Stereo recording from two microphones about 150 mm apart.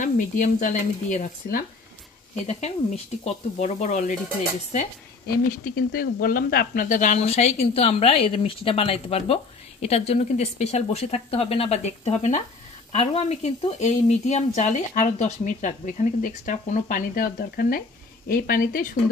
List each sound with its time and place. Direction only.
0.0 s speech: 60° left (ahead or behind)
3.3 s a woman's voice: 50° left (ahead or behind)
5.2 s speech: 75° left (ahead or behind); by 7.2 s 60° left (ahead or behind)
7.2 s a woman's voice: 45° left (ahead or behind); by 18.9 s 70° left (ahead or behind)